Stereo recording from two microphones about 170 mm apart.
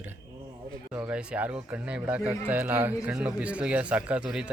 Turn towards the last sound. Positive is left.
turn(degrees=-5)  # may be behind; listen again after turning